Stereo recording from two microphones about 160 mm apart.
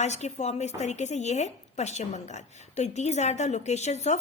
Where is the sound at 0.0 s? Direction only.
45° left (ahead or behind).